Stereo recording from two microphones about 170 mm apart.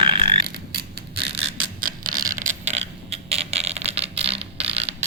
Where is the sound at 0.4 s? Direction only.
65° right (ahead or behind).